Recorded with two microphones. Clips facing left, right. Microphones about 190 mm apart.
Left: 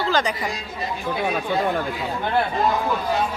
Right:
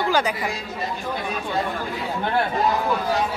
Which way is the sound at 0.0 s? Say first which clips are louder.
Right 1 dB; 10° right (ahead or behind).